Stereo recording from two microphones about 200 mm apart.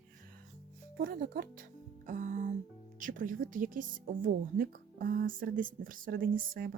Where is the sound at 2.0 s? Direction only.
40° right (ahead or behind).